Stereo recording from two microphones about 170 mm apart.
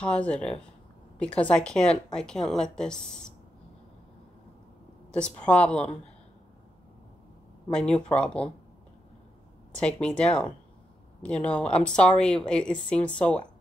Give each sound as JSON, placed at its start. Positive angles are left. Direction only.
{"t": 0.0, "sound": "a woman's voice", "side_deg": 5}
{"t": 5.1, "sound": "speech", "side_deg": 5}
{"t": 7.7, "sound": "speech", "side_deg": 5}
{"t": 9.8, "sound": "speech", "side_deg": 5}
{"t": 11.2, "sound": "a woman's voice", "side_deg": 5}